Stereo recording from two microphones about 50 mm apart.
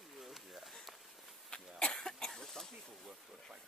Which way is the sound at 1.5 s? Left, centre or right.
Left.